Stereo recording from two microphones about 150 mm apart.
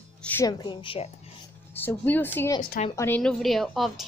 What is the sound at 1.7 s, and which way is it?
A woman's voice, 15° left (ahead or behind).